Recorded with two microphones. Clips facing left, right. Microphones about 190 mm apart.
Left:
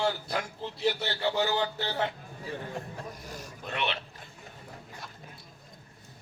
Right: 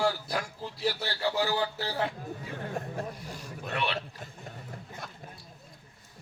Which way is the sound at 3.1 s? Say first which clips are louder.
Right 1 dB; 45° left (ahead or behind).